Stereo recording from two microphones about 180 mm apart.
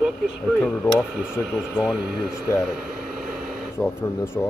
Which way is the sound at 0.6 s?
5° left (ahead or behind).